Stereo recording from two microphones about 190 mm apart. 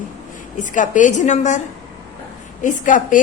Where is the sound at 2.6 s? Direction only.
45° left (ahead or behind).